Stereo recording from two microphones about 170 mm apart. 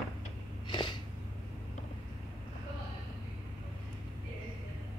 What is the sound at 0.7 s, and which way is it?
Snort, 25° left (ahead or behind).